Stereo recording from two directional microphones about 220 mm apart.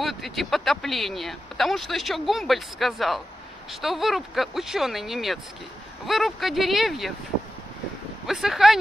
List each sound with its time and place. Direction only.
0.0 s speech: centre (ahead or behind)
8.3 s speech: centre (ahead or behind)